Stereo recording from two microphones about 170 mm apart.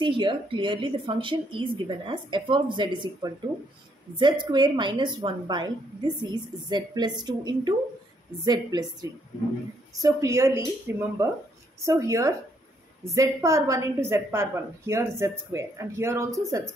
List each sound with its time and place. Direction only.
0.0 s a woman's voice: 30° right (ahead or behind)
10.0 s a woman's voice: 20° right (ahead or behind)